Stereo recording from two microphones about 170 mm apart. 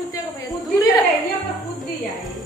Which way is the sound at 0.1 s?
20° left (ahead or behind).